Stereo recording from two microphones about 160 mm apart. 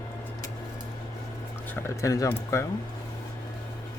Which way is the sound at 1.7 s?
20° left (ahead or behind).